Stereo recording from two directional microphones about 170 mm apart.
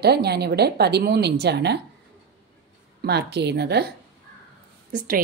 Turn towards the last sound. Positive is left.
turn(degrees=-55)  # may be behind; listen again after turning